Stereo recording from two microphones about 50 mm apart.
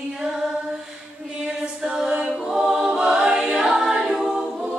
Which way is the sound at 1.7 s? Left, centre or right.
Centre.